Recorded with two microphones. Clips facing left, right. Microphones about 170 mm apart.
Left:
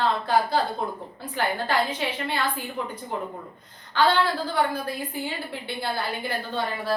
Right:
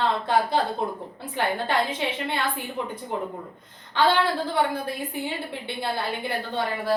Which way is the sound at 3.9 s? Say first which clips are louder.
Even; 25° right (ahead or behind).